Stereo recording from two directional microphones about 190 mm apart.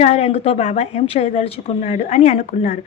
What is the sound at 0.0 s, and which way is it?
A woman's voice, 35° left (ahead or behind).